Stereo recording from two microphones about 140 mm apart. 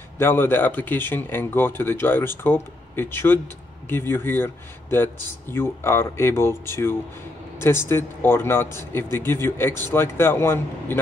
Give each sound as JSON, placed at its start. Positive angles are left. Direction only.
{"t": 0.2, "sound": "speech", "side_deg": 15}